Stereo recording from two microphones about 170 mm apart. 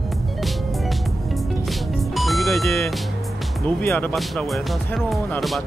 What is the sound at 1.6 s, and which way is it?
Music, centre (ahead or behind).